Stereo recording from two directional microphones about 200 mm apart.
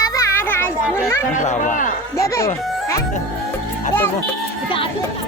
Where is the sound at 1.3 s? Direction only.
40° left (ahead or behind).